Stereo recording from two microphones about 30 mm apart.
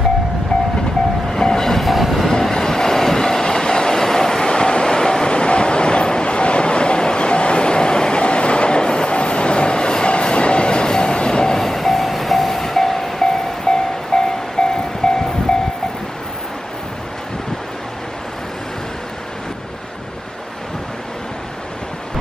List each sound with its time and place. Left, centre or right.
1.3 s train: centre
1.8 s train: centre
2.2 s train: centre
4.5 s train: left
11.5 s train: centre; by 15.2 s left